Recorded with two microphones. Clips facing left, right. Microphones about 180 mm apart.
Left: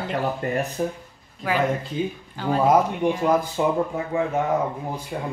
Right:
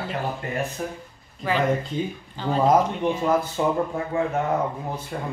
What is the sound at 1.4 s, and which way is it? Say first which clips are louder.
A woman's voice: even; 10° left (ahead or behind).